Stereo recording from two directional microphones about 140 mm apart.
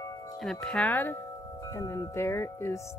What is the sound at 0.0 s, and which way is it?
Chime, 25° left (ahead or behind).